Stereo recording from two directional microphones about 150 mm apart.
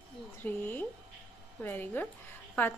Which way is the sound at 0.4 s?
10° left (ahead or behind).